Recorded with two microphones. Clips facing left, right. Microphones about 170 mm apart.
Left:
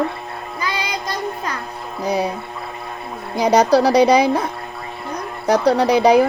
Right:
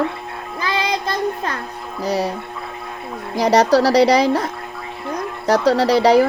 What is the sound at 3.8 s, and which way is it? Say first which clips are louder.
Speech: even; 85° right.